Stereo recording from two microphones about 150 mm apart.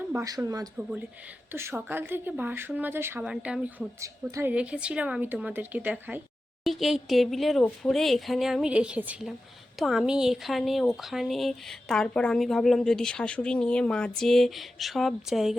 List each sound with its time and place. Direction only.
0.3 s a woman's voice: 25° right (ahead or behind)
0.8 s speech: 10° right (ahead or behind)
4.0 s a woman's voice: 20° right (ahead or behind)
4.5 s speech: 5° right (ahead or behind)
6.7 s speech: centre (ahead or behind)